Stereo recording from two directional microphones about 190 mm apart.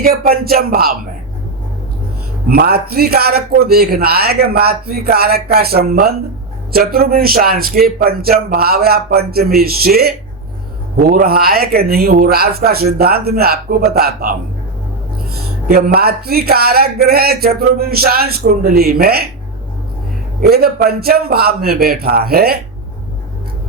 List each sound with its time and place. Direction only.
0.0 s speech: 50° right (ahead or behind)
2.5 s speech: 55° right (ahead or behind)
15.6 s speech: 55° right (ahead or behind)
20.4 s speech: 55° right (ahead or behind)